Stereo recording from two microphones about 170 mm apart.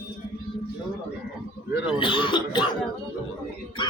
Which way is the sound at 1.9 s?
30° left (ahead or behind).